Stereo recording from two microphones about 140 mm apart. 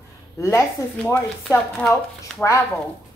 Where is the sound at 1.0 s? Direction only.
5° left (ahead or behind).